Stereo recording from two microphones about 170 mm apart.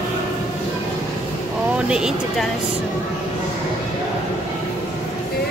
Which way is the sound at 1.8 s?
5° right (ahead or behind).